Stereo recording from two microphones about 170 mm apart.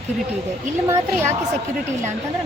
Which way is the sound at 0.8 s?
15° right (ahead or behind).